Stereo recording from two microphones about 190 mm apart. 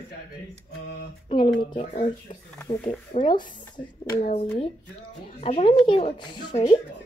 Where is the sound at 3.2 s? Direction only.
25° left (ahead or behind).